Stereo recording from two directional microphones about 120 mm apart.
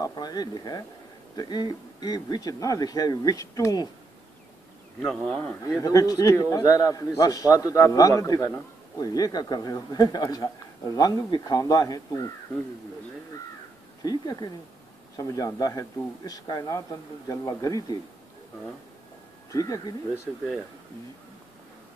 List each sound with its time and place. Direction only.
0.0 s a man's voice: 35° left (ahead or behind)
5.0 s speech: 5° left (ahead or behind)
5.8 s a man's voice: 30° left (ahead or behind)
14.0 s a man's voice: 35° left (ahead or behind)
19.5 s speech: 30° left (ahead or behind)